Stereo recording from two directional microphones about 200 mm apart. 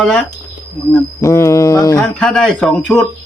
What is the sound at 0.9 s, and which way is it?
Speech, 15° left (ahead or behind).